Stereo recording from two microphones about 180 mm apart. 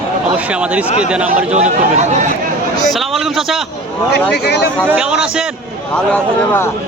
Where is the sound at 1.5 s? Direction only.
40° right (ahead or behind).